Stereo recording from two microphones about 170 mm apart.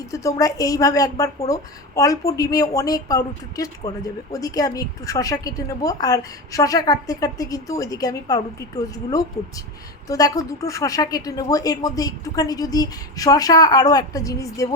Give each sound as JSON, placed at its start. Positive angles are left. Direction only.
{"t": 0.0, "sound": "a woman's voice", "side_deg": 20}